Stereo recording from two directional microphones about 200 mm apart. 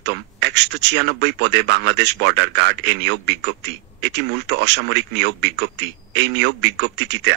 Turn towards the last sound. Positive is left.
turn(degrees=-60)  # may be behind; listen again after turning